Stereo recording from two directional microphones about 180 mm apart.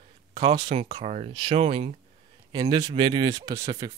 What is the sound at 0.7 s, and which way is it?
Speech, 35° right (ahead or behind).